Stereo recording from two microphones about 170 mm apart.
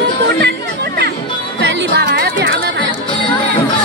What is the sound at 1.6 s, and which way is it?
Music, 90° right.